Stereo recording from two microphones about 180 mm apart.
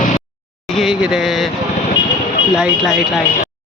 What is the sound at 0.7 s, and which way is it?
Speech, centre (ahead or behind).